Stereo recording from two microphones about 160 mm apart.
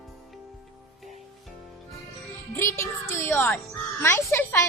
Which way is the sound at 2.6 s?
15° left (ahead or behind).